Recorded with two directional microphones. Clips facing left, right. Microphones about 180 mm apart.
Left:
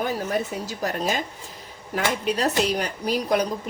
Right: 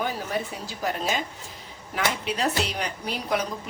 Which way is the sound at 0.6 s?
45° left (ahead or behind).